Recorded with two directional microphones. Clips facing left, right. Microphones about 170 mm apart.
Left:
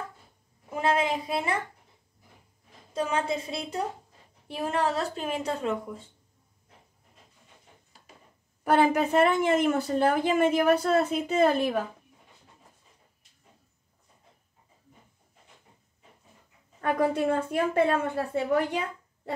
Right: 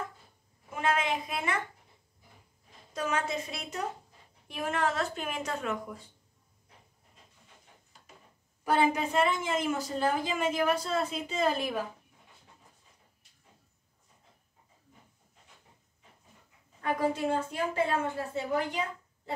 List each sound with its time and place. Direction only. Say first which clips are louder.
0.7 s a sound: left 4 dB; 35° left (ahead or behind)
2.9 s a woman's voice: left 4 dB; 30° left (ahead or behind)
8.6 s a woman's voice: left 5 dB; 60° left (ahead or behind)
16.8 s a woman's voice: left 4 dB; 60° left (ahead or behind)